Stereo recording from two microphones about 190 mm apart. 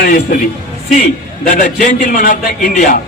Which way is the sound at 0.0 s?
50° left (ahead or behind).